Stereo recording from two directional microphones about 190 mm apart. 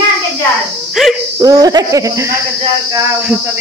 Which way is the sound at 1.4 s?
20° right (ahead or behind).